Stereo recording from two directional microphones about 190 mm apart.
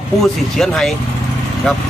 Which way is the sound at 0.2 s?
Centre (ahead or behind).